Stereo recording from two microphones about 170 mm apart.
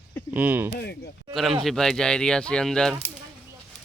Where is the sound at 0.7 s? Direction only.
70° left (ahead or behind).